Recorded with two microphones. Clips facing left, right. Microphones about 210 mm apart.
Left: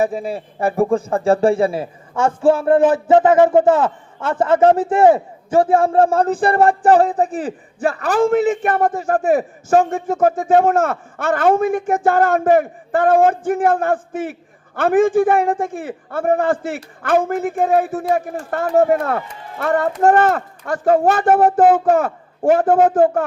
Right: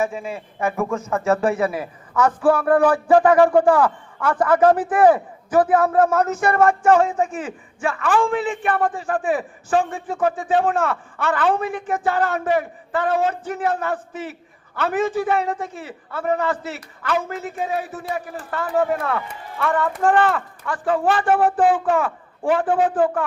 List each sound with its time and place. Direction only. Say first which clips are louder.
0.0 s speech: left 5 dB; 35° left (ahead or behind)